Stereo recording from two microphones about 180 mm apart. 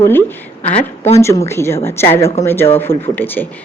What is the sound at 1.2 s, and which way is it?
A woman's voice, 15° left (ahead or behind).